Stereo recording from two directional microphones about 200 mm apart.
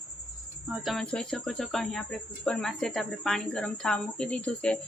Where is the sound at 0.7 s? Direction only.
Centre (ahead or behind).